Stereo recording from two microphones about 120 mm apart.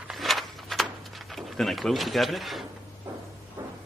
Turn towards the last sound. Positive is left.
turn(degrees=-20)  # may be behind; listen again after turning